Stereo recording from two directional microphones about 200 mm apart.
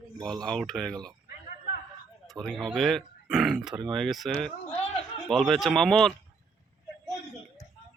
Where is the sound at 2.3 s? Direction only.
Centre (ahead or behind).